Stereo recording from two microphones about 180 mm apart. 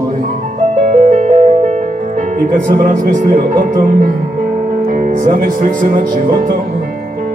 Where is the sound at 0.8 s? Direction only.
45° right (ahead or behind).